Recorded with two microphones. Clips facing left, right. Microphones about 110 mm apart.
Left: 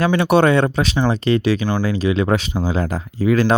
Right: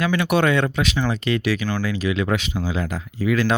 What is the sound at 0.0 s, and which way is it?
Speech, 30° left (ahead or behind).